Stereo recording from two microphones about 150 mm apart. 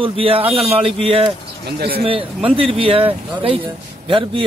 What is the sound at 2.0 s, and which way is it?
Speech, 40° right (ahead or behind).